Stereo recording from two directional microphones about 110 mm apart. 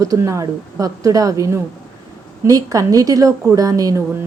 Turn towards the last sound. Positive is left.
turn(degrees=-30)  # may be behind; listen again after turning